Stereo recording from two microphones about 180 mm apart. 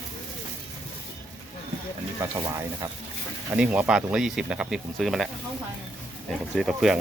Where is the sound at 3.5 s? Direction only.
10° right (ahead or behind).